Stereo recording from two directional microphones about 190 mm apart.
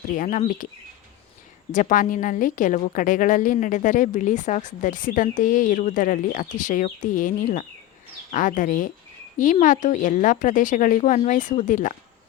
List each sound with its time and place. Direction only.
0.2 s a woman's voice: 45° left (ahead or behind)
1.7 s a woman's voice: 45° left (ahead or behind)